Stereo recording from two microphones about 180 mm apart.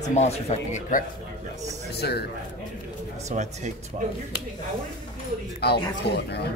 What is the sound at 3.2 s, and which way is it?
Speech, 40° right (ahead or behind).